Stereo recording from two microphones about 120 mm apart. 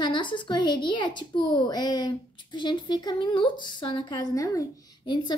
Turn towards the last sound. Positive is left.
turn(degrees=40)  # may be behind; listen again after turning